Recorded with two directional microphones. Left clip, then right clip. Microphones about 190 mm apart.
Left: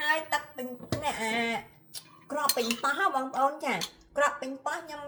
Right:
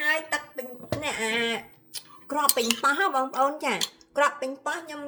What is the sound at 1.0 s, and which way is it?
Speech, 40° right (ahead or behind).